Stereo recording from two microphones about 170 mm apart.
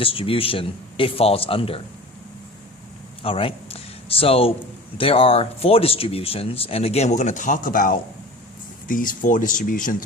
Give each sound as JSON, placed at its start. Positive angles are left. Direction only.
{"t": 0.0, "sound": "speech", "side_deg": 30}
{"t": 3.2, "sound": "a man's voice", "side_deg": 35}